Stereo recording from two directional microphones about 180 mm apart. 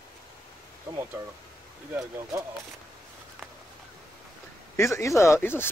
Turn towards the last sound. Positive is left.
turn(degrees=10)  # may be behind; listen again after turning